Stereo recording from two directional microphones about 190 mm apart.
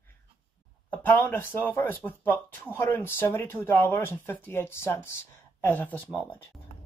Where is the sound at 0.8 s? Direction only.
10° left (ahead or behind).